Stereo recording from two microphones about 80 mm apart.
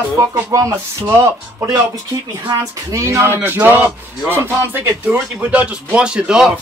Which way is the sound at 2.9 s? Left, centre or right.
Right.